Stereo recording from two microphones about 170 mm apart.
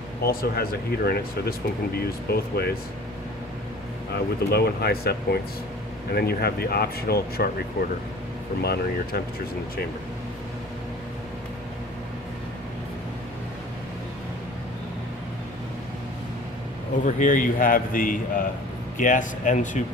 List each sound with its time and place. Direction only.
0.2 s speech: 65° left (ahead or behind)
4.5 s speech: 70° left (ahead or behind)
8.5 s speech: 65° left (ahead or behind)
17.0 s a man's voice: 50° left (ahead or behind)